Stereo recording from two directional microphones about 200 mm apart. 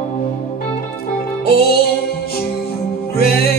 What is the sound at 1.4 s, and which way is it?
Music, 50° left (ahead or behind).